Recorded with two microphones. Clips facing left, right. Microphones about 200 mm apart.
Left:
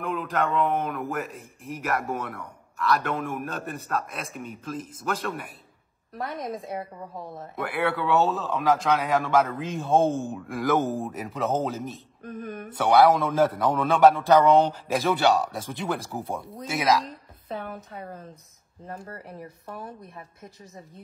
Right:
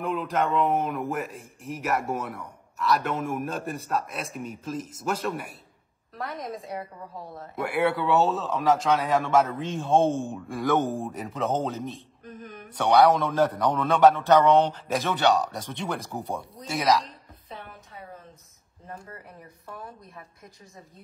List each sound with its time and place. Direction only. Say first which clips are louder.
0.1 s a man's voice: even; centre (ahead or behind)
7.7 s a man's voice: right 1 dB; 5° right (ahead or behind)
12.3 s a sound: left 7 dB; 55° left (ahead or behind)
12.7 s a man's voice: left 1 dB; 5° left (ahead or behind)